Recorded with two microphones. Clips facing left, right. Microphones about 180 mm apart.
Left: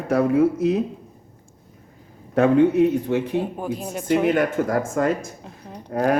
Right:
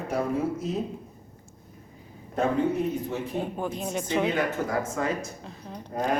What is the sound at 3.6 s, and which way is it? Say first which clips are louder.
Speech: left 2 dB; 5° left (ahead or behind).